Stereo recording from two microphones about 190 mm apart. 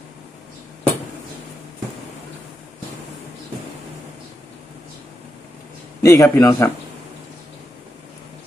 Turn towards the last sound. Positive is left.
turn(degrees=15)  # may be behind; listen again after turning